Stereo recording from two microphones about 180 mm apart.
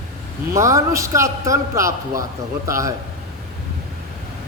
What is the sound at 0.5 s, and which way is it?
A man's voice, 15° right (ahead or behind).